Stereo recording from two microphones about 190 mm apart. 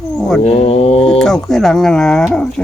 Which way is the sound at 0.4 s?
30° left (ahead or behind).